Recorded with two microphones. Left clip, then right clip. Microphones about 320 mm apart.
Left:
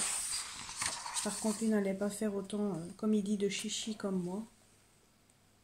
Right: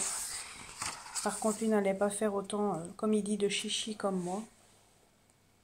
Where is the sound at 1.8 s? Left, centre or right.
Right.